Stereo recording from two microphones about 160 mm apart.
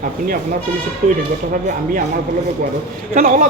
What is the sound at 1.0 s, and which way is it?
Speech, 55° right (ahead or behind).